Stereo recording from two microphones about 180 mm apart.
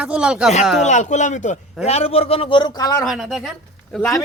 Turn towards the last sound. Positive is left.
turn(degrees=0)  # may be behind; listen again after turning